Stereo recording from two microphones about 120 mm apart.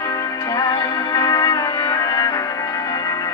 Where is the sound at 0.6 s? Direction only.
30° left (ahead or behind).